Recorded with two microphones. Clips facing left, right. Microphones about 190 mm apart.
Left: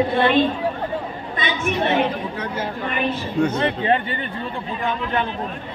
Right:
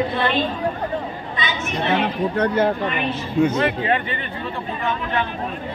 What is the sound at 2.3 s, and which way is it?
Speech, 60° right (ahead or behind).